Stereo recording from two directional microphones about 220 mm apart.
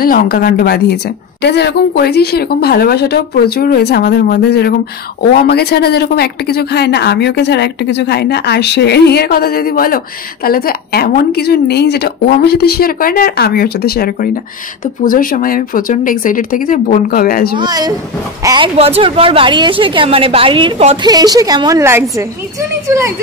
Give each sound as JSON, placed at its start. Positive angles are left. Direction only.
{"t": 0.0, "sound": "a woman's voice", "side_deg": 40}
{"t": 17.6, "sound": "speech", "side_deg": -15}